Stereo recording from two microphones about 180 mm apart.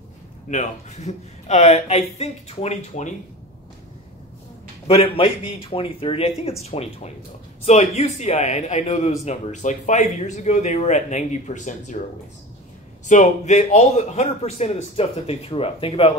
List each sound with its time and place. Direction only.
0.5 s a man's voice: 40° left (ahead or behind)
4.8 s a man's voice: 30° left (ahead or behind)
13.1 s a man's voice: 40° left (ahead or behind)